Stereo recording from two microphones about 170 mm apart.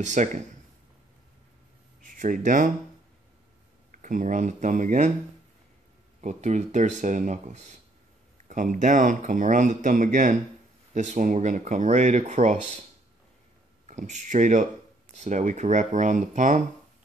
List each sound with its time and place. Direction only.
0.0 s speech: 45° right (ahead or behind)
2.0 s speech: 50° right (ahead or behind)
3.9 s speech: 50° right (ahead or behind)
6.2 s speech: 45° right (ahead or behind)
13.8 s speech: 45° right (ahead or behind)